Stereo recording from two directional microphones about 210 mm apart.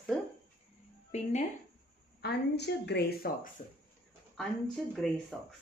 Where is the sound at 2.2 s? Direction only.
50° left (ahead or behind).